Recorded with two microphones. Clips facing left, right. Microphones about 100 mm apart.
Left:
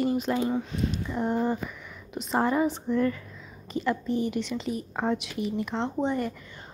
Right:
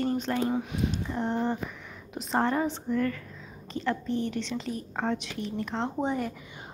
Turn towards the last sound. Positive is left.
turn(degrees=-10)  # may be behind; listen again after turning